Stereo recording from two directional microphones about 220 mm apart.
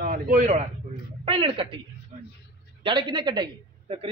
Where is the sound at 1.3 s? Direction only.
25° right (ahead or behind).